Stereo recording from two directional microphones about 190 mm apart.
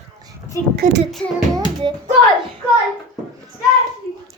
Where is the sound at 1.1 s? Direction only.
Centre (ahead or behind).